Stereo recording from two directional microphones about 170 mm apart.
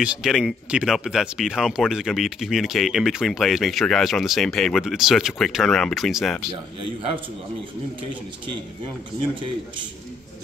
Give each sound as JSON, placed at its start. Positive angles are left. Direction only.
{"t": 0.0, "sound": "speech", "side_deg": -5}
{"t": 9.3, "sound": "a man's voice", "side_deg": -30}